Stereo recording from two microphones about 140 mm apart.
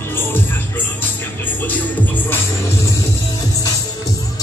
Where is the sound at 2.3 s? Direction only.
20° left (ahead or behind).